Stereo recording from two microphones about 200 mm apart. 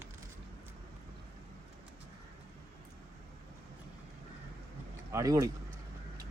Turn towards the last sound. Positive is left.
turn(degrees=-15)  # may be behind; listen again after turning